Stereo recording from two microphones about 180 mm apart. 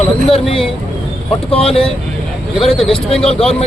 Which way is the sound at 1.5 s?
30° left (ahead or behind).